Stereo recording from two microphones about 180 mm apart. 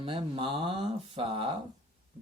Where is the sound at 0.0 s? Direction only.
30° right (ahead or behind).